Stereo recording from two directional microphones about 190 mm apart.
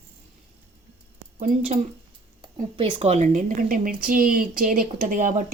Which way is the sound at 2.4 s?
30° right (ahead or behind).